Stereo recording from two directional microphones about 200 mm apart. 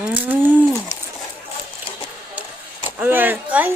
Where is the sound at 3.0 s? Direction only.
10° right (ahead or behind).